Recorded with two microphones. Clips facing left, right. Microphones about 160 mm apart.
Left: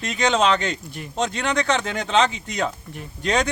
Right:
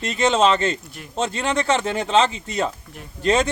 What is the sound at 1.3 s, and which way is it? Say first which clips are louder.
Speech: right 1 dB; 30° right (ahead or behind).